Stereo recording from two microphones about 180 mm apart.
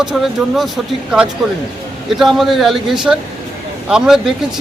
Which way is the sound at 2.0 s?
Centre (ahead or behind).